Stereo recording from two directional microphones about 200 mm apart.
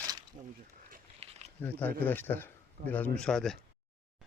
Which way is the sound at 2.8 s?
50° right (ahead or behind).